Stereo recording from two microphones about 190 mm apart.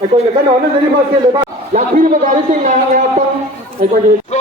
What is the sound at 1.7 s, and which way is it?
A man's voice, 40° right (ahead or behind).